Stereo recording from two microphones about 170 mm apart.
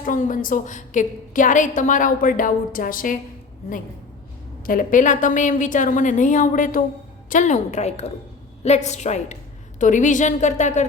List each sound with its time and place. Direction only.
0.0 s a woman's voice: 50° left (ahead or behind)
4.6 s a woman's voice: 55° left (ahead or behind)